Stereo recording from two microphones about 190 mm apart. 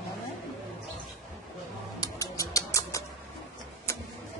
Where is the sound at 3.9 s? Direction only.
15° left (ahead or behind).